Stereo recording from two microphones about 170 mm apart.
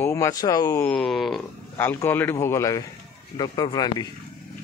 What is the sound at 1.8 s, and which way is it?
Speech, 15° left (ahead or behind).